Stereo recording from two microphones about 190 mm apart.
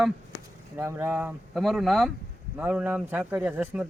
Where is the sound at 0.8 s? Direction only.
10° right (ahead or behind).